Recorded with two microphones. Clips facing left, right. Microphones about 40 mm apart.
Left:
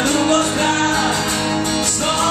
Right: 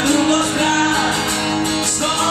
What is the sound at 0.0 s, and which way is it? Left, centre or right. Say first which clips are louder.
Music: even; centre.